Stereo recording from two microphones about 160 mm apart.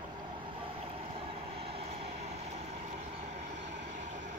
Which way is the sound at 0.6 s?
35° right (ahead or behind).